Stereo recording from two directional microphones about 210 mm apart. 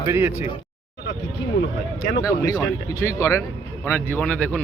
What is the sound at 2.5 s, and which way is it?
Speech, 15° left (ahead or behind).